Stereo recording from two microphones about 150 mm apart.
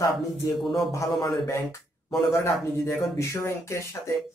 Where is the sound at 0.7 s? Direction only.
20° left (ahead or behind).